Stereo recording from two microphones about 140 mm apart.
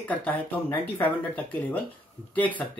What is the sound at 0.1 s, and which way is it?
Speech, 10° left (ahead or behind).